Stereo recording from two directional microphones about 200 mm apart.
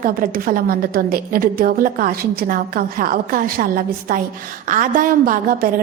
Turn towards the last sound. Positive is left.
turn(degrees=-45)  # may be behind; listen again after turning